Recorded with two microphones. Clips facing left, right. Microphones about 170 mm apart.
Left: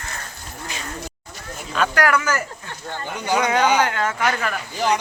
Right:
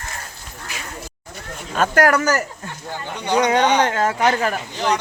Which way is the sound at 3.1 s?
5° left (ahead or behind).